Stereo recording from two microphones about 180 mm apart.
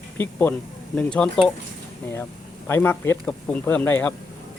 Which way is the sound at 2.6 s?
10° left (ahead or behind).